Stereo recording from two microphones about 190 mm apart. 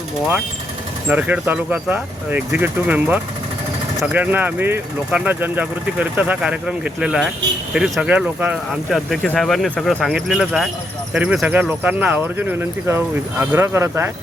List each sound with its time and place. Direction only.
1.0 s speech: 10° right (ahead or behind)